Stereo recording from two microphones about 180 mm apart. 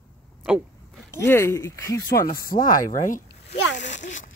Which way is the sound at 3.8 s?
40° left (ahead or behind).